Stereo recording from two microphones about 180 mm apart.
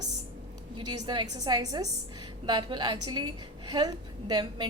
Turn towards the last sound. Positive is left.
turn(degrees=-25)  # may be behind; listen again after turning